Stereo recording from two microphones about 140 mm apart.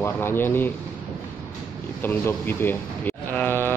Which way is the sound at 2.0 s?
15° left (ahead or behind).